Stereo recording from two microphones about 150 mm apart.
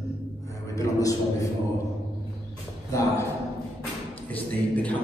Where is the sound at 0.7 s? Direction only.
20° left (ahead or behind).